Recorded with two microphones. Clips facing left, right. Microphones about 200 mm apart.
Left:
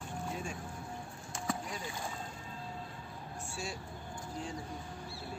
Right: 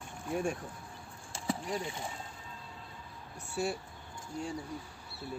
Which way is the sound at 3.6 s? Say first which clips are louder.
Right 9 dB; 60° right (ahead or behind).